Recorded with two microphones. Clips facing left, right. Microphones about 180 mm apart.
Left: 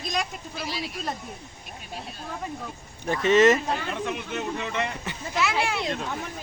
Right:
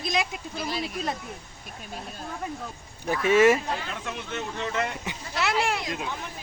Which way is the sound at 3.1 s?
10° right (ahead or behind).